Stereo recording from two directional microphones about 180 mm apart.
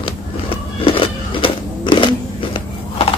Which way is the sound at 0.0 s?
30° left (ahead or behind).